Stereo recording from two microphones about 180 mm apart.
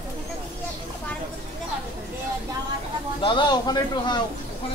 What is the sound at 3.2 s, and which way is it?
Speech, 25° left (ahead or behind).